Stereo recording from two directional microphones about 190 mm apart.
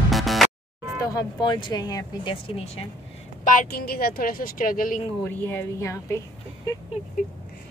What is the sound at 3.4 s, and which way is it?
Speech, 50° left (ahead or behind).